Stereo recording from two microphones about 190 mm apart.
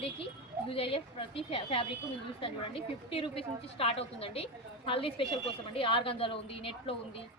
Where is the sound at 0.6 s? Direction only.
30° left (ahead or behind).